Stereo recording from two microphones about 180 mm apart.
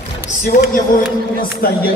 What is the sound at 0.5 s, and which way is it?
Speech, 50° left (ahead or behind).